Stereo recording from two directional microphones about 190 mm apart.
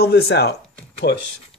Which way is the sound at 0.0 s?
60° left (ahead or behind).